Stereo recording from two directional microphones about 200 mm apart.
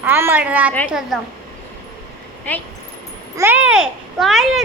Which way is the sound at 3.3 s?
10° right (ahead or behind).